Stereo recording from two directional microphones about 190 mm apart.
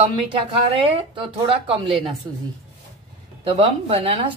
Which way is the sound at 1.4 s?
30° right (ahead or behind).